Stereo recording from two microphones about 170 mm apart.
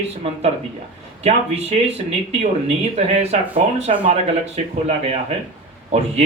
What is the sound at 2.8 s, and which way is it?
Speech, 40° right (ahead or behind).